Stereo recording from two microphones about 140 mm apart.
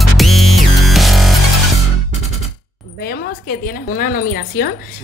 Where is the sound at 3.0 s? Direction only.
90° left.